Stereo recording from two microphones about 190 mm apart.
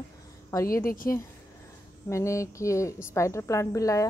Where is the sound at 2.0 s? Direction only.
15° left (ahead or behind).